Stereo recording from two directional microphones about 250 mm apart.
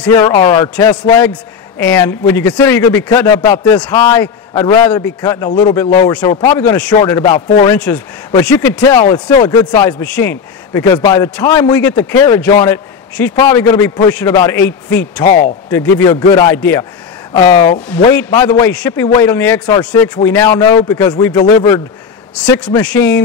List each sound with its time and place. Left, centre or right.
0.0 s a man's voice: centre
15.2 s a man's voice: left
15.7 s a man's voice: centre
16.5 s a man's voice: centre
22.8 s a man's voice: centre